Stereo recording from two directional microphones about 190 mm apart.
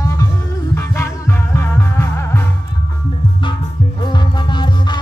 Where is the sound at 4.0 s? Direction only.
25° left (ahead or behind).